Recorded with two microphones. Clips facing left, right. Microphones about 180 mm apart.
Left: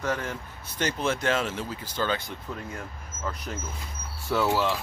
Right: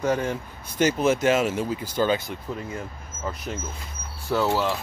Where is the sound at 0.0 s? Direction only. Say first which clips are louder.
Right 6 dB; 15° right (ahead or behind).